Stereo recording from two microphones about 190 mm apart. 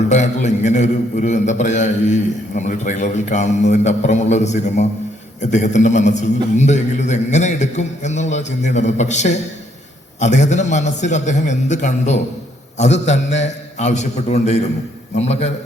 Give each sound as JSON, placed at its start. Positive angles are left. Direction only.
{"t": 0.1, "sound": "a man's voice", "side_deg": 40}